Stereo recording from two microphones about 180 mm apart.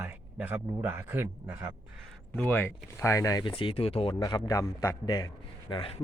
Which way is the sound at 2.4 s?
10° left (ahead or behind).